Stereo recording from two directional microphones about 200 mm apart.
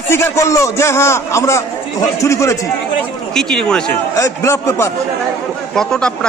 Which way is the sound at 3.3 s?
5° left (ahead or behind).